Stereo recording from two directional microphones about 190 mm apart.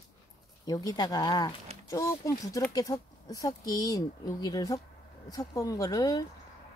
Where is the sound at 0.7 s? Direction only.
20° left (ahead or behind).